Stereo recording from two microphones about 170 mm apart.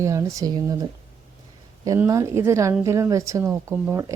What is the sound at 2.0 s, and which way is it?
Speech, 15° right (ahead or behind).